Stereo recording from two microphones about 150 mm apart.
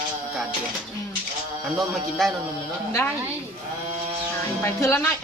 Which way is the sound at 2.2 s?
Centre (ahead or behind).